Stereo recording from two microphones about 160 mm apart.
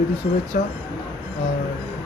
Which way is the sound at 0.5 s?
55° left (ahead or behind).